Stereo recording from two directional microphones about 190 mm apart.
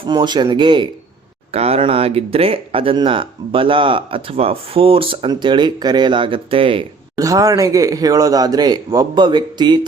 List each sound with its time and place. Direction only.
0.0 s speech: 25° right (ahead or behind)
7.2 s speech: 20° right (ahead or behind)